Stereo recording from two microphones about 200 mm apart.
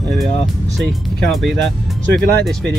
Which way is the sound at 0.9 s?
Centre (ahead or behind).